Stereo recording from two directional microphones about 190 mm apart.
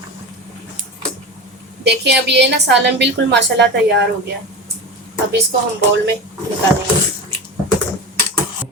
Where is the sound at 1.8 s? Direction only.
65° right (ahead or behind).